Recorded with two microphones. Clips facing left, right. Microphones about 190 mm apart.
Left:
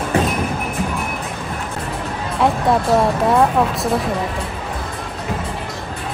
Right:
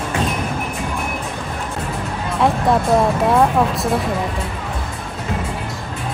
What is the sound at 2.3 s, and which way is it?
Music, centre (ahead or behind).